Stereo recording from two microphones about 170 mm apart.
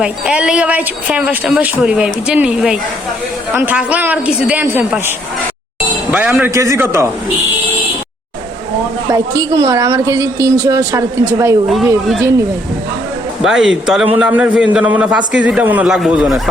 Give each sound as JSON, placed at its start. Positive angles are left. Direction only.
{"t": 0.0, "sound": "a man's voice", "side_deg": -5}
{"t": 9.0, "sound": "speech", "side_deg": -20}
{"t": 13.4, "sound": "a man's voice", "side_deg": -5}